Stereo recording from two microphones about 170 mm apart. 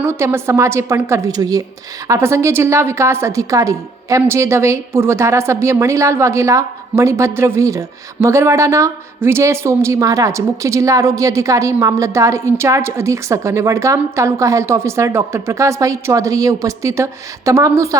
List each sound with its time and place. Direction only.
0.0 s a woman's voice: 15° right (ahead or behind)